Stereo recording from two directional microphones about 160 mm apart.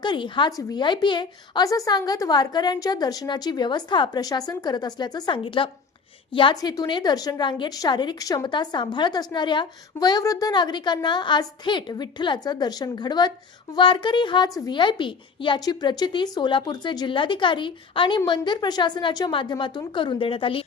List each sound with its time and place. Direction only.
0.0 s a woman's voice: 30° left (ahead or behind)